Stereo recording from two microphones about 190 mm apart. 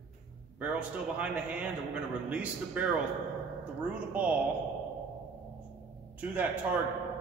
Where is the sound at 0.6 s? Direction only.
5° right (ahead or behind).